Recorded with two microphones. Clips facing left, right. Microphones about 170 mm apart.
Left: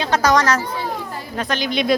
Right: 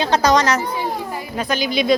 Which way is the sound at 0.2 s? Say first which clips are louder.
Right 1 dB; 15° right (ahead or behind).